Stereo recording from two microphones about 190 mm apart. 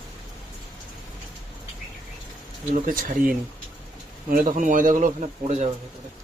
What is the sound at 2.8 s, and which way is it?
Speech, 45° right (ahead or behind).